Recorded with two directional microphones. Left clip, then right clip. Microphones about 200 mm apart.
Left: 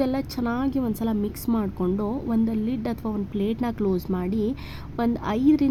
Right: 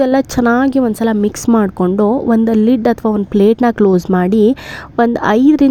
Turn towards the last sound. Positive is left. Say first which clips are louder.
# right 11 dB
turn(degrees=-40)  # may be behind; listen again after turning